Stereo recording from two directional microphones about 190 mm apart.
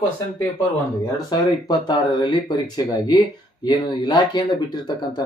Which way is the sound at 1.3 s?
20° left (ahead or behind).